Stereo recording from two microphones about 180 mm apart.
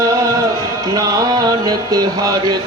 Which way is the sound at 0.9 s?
20° right (ahead or behind).